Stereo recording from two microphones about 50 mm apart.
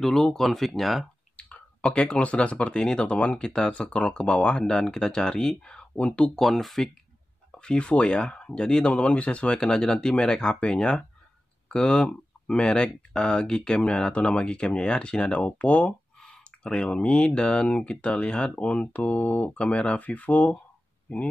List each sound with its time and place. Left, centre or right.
0.0 s speech: centre
1.3 s clicking: left
1.8 s speech: centre
6.4 s speech: centre
7.5 s speech: centre